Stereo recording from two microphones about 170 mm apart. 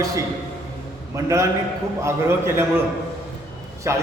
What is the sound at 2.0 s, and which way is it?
Speech, 15° right (ahead or behind).